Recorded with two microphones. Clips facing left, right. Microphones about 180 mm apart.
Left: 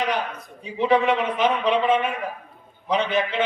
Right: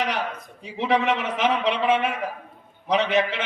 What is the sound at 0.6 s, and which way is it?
A man's voice, 80° right.